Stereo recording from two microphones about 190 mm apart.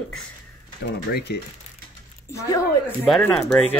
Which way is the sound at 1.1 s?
60° left (ahead or behind).